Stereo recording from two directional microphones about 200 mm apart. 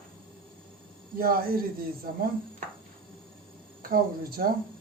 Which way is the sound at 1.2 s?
45° right (ahead or behind).